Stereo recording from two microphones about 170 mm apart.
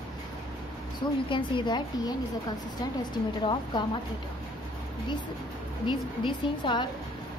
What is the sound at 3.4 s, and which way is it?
Speech, 30° left (ahead or behind).